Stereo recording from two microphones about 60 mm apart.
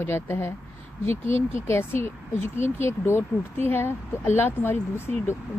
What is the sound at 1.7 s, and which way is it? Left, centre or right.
Speech, left.